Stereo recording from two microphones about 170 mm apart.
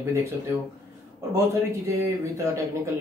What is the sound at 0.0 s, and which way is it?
Speech, 15° right (ahead or behind).